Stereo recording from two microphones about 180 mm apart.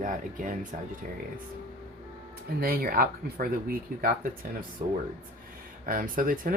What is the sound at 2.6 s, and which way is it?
Speech, 55° right (ahead or behind).